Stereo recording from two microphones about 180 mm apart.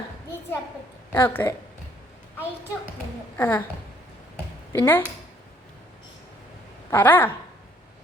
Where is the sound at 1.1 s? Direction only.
15° left (ahead or behind).